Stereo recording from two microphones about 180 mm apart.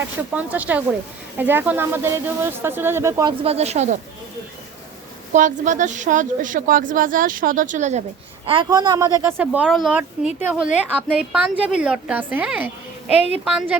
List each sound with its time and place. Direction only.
0.0 s speech: 10° right (ahead or behind)
3.4 s a woman's voice: 35° right (ahead or behind)
5.3 s a woman's voice: 45° right (ahead or behind)
8.4 s speech: 25° right (ahead or behind)
9.4 s speech: 5° right (ahead or behind)